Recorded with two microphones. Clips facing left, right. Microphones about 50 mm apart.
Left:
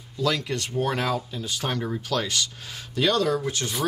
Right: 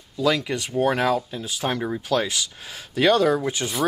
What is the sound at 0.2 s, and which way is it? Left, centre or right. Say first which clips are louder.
Speech: right 3 dB; centre.